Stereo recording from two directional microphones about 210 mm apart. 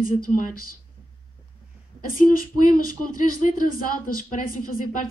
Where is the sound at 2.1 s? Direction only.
40° left (ahead or behind).